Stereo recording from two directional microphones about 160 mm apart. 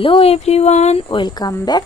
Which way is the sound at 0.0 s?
35° left (ahead or behind).